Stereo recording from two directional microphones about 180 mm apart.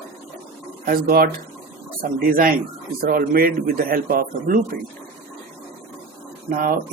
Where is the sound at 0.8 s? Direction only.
55° right (ahead or behind).